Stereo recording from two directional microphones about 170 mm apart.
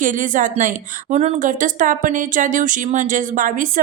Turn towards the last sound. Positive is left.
turn(degrees=-50)  # may be behind; listen again after turning